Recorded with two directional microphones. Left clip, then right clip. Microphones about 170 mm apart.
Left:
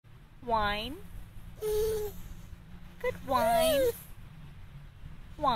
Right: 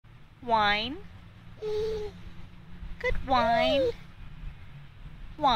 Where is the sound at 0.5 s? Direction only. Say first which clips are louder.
Right 5 dB; 15° right (ahead or behind).